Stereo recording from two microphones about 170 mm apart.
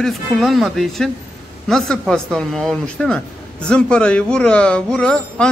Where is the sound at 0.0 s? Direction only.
Centre (ahead or behind).